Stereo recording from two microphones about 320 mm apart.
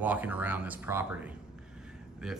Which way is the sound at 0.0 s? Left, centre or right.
Centre.